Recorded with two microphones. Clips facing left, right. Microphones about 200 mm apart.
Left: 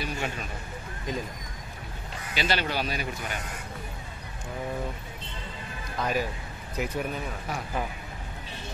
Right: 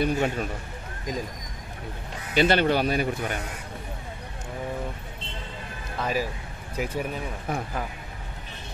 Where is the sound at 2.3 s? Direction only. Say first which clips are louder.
Right 8 dB; 55° right (ahead or behind).